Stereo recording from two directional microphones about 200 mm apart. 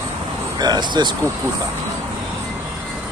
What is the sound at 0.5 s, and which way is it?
Speech, 20° right (ahead or behind).